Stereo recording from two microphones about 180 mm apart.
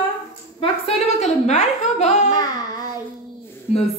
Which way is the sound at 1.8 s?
40° left (ahead or behind).